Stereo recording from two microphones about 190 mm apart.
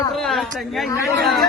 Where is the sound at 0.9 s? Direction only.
15° left (ahead or behind).